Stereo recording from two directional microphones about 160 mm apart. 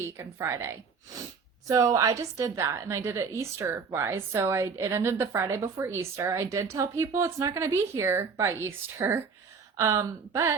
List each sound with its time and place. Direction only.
0.2 s a woman's voice: 20° right (ahead or behind)